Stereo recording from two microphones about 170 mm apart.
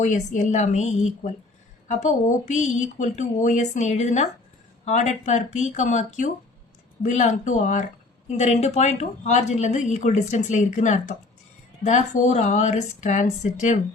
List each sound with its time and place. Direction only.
0.0 s a woman's voice: 45° left (ahead or behind)